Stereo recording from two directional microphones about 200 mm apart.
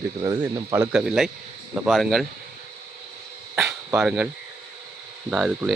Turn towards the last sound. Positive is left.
turn(degrees=-5)  # may be behind; listen again after turning